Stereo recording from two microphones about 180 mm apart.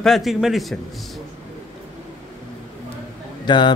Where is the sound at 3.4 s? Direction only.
25° left (ahead or behind).